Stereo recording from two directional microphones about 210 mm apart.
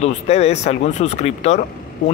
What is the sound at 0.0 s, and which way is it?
Speech, 30° left (ahead or behind).